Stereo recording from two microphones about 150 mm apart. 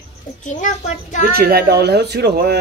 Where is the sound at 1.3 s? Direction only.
90° right.